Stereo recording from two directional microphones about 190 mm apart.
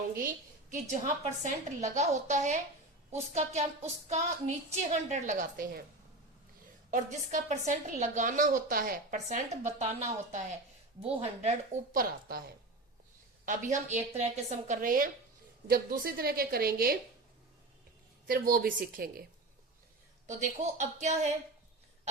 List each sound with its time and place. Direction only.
0.2 s a woman's voice: 45° right (ahead or behind)
6.9 s a woman's voice: 40° right (ahead or behind)
18.3 s a woman's voice: 50° right (ahead or behind)
20.2 s a woman's voice: 40° right (ahead or behind)